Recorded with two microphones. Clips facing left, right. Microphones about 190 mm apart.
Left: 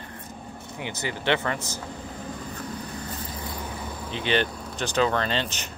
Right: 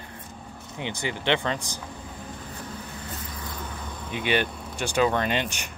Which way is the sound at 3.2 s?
30° left (ahead or behind).